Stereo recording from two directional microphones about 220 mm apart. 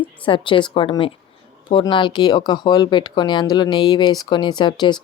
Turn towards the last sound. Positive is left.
turn(degrees=20)  # may be behind; listen again after turning